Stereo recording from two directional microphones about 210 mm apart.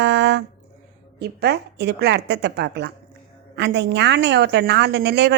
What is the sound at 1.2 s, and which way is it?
A woman's voice, 50° right (ahead or behind).